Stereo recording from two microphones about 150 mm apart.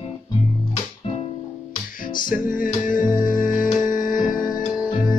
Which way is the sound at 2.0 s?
65° left (ahead or behind).